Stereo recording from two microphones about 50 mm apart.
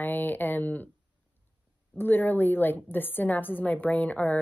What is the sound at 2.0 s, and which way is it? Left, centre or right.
A woman's voice, left.